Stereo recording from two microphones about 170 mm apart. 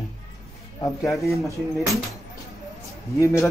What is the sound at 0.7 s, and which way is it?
Speech, 20° left (ahead or behind).